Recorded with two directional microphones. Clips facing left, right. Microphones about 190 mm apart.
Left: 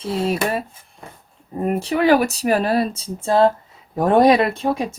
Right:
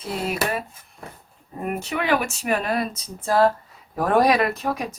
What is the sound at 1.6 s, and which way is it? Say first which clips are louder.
Speech: left 8 dB; 35° left (ahead or behind).